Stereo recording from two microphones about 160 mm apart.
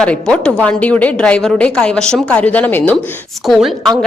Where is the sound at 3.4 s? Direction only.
Centre (ahead or behind).